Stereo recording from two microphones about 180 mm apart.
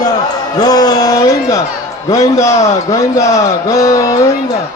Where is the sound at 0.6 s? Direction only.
20° left (ahead or behind).